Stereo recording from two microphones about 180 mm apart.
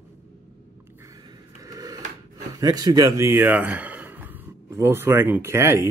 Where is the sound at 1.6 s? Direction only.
20° right (ahead or behind).